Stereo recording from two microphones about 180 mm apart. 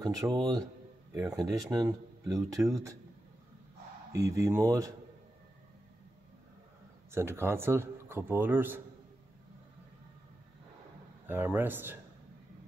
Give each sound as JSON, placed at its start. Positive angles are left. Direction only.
{"t": 0.0, "sound": "speech", "side_deg": -20}
{"t": 4.1, "sound": "speech", "side_deg": -20}
{"t": 7.1, "sound": "speech", "side_deg": -15}
{"t": 11.2, "sound": "speech", "side_deg": -10}